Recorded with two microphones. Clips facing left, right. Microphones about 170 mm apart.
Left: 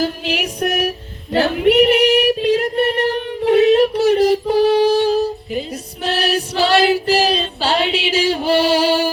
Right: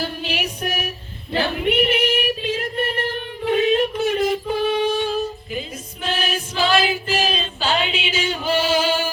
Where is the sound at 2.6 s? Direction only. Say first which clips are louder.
Left 7 dB; 75° left (ahead or behind).